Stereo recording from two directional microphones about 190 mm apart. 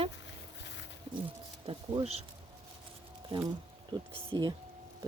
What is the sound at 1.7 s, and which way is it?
Speech, 30° right (ahead or behind).